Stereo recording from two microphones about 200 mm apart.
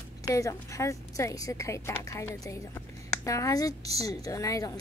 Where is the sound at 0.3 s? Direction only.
15° left (ahead or behind).